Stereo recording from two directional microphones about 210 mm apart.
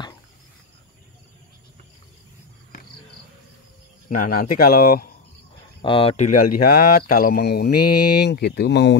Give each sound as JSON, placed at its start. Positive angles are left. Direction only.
{"t": 4.1, "sound": "speech", "side_deg": 40}
{"t": 5.8, "sound": "speech", "side_deg": 25}
{"t": 6.3, "sound": "speech", "side_deg": 45}